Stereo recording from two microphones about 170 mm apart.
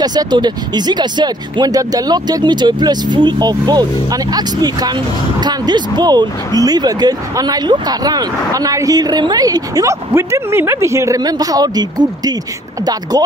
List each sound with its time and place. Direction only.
0.0 s speech: 25° right (ahead or behind)